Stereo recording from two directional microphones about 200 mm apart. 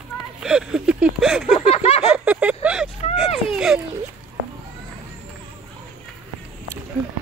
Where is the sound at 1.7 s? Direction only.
30° left (ahead or behind).